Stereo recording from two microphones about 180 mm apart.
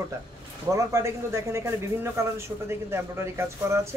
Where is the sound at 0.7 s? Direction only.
15° right (ahead or behind).